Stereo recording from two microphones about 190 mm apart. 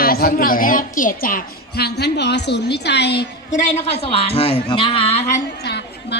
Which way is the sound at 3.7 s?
35° left (ahead or behind).